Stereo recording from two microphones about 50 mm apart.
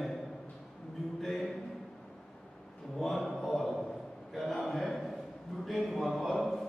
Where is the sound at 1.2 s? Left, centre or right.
Centre.